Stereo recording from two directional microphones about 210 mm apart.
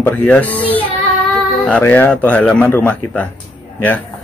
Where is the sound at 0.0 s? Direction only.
5° left (ahead or behind).